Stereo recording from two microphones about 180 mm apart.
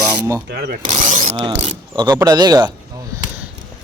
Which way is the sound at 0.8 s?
45° right (ahead or behind).